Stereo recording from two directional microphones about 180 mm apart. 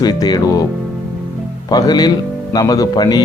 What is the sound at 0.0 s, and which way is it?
Speech, 20° left (ahead or behind).